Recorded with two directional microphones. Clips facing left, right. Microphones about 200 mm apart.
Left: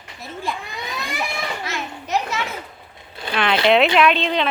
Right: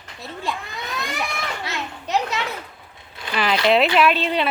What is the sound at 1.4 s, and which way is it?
Children playing, 20° left (ahead or behind).